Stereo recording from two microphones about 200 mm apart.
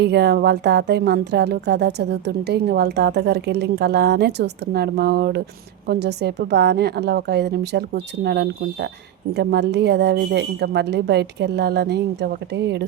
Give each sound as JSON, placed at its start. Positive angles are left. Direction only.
{"t": 0.0, "sound": "a woman's voice", "side_deg": -55}